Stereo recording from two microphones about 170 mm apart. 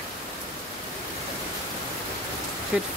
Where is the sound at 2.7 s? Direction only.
5° right (ahead or behind).